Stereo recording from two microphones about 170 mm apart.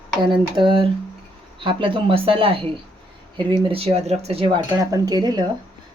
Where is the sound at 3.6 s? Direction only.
35° right (ahead or behind).